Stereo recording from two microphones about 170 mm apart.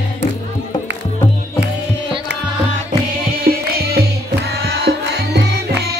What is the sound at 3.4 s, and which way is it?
Music, 65° right (ahead or behind).